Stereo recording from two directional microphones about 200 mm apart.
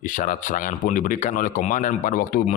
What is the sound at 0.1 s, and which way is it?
Speech, 40° left (ahead or behind).